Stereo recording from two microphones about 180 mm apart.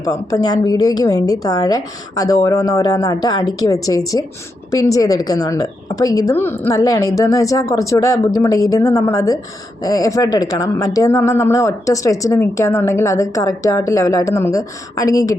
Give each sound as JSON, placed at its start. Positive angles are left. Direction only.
{"t": 0.0, "sound": "a woman's voice", "side_deg": 20}